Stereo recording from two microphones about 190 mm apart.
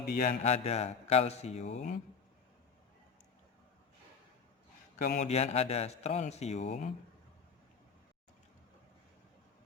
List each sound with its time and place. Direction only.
0.1 s a man's voice: 40° left (ahead or behind)
5.1 s a man's voice: 35° left (ahead or behind)